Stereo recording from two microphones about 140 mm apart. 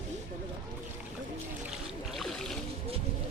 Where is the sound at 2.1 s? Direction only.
Centre (ahead or behind).